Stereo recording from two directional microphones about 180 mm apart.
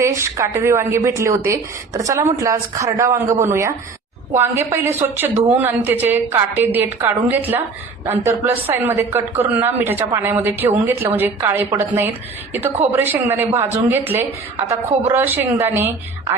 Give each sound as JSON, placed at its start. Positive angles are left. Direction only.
{"t": 0.0, "sound": "a woman's voice", "side_deg": -15}
{"t": 15.1, "sound": "a woman's voice", "side_deg": -10}